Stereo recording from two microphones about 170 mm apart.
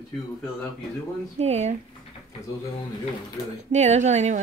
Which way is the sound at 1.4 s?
40° right (ahead or behind).